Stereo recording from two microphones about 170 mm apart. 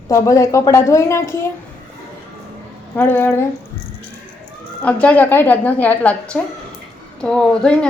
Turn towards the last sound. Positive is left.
turn(degrees=5)  # may be behind; listen again after turning